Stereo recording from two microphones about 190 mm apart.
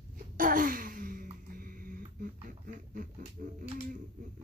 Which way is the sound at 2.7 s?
40° right (ahead or behind).